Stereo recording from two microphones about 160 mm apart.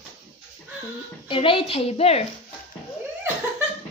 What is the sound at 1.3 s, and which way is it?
Speech, 35° left (ahead or behind).